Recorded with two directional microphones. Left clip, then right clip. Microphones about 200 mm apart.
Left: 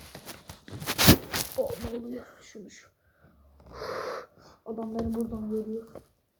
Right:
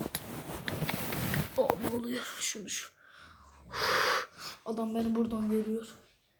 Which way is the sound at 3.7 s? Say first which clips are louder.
Right 6 dB; 25° right (ahead or behind).